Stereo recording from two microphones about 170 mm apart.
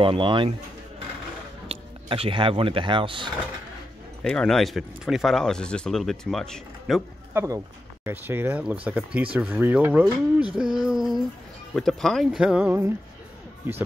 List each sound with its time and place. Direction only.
0.0 s speech: 30° right (ahead or behind)
1.7 s speech: 35° right (ahead or behind)
4.2 s speech: 5° left (ahead or behind)
7.3 s speech: 15° right (ahead or behind)
10.8 s a sound: 5° right (ahead or behind)
11.7 s speech: centre (ahead or behind)